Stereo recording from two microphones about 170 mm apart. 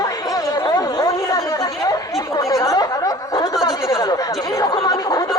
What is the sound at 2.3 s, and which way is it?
Snicker, 20° left (ahead or behind).